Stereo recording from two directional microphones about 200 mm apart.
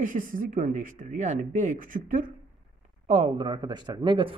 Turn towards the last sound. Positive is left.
turn(degrees=-25)  # may be behind; listen again after turning